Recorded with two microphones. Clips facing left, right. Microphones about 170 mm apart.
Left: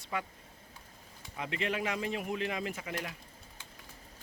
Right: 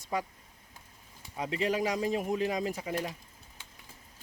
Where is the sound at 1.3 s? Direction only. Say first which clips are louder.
Right 5 dB; 35° right (ahead or behind).